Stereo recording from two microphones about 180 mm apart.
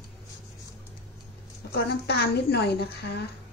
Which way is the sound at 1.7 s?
60° left (ahead or behind).